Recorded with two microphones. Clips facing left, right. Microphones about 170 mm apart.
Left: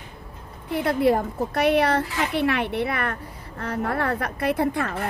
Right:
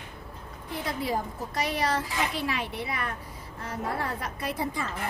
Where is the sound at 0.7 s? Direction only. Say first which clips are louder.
Left 10 dB; 60° left (ahead or behind).